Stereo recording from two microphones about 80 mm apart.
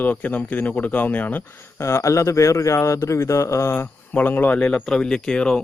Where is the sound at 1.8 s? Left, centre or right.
Left.